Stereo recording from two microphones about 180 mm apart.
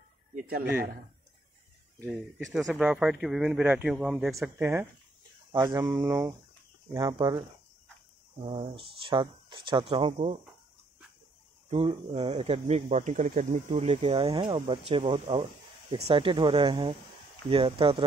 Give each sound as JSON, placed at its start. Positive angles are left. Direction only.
{"t": 0.3, "sound": "speech", "side_deg": -50}
{"t": 2.0, "sound": "speech", "side_deg": 0}
{"t": 8.5, "sound": "speech", "side_deg": -30}
{"t": 11.7, "sound": "speech", "side_deg": -35}